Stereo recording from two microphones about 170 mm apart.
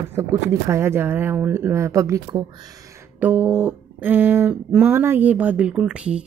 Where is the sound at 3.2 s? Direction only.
10° right (ahead or behind).